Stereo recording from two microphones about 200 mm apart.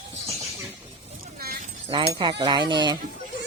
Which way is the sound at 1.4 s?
50° right (ahead or behind).